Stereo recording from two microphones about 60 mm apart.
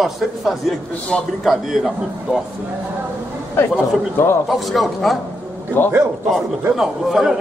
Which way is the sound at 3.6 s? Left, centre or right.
Left.